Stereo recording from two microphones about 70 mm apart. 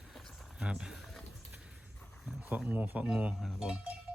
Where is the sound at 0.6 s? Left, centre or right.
Centre.